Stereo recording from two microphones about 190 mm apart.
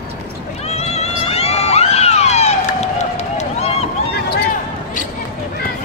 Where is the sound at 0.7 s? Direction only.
35° left (ahead or behind).